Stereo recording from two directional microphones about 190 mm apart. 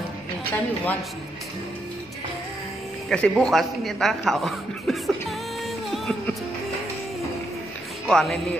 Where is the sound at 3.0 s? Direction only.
5° left (ahead or behind).